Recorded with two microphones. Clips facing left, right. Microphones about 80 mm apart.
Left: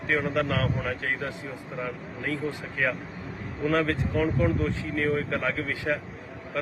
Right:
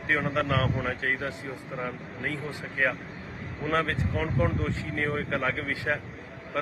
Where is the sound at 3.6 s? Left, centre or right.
Right.